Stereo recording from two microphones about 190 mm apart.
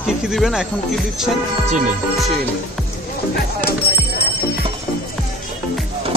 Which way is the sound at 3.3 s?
55° left (ahead or behind).